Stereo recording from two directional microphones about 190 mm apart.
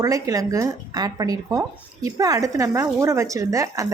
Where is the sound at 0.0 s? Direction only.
20° right (ahead or behind).